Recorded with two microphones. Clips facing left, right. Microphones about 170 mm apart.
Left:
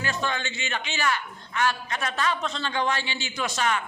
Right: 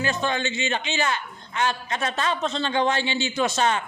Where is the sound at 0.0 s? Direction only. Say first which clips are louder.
Right 4 dB; 20° right (ahead or behind).